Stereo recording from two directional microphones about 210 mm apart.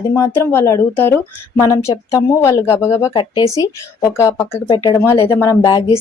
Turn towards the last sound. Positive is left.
turn(degrees=20)  # may be behind; listen again after turning